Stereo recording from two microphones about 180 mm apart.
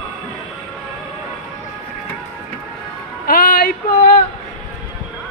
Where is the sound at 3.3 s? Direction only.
55° left (ahead or behind).